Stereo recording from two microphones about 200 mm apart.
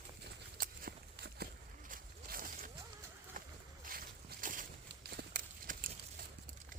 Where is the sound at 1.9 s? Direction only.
45° right (ahead or behind).